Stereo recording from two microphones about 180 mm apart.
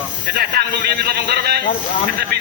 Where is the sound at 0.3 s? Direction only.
60° right (ahead or behind).